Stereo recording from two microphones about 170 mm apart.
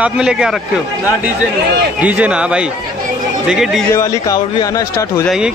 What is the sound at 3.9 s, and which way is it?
Speech, 20° left (ahead or behind).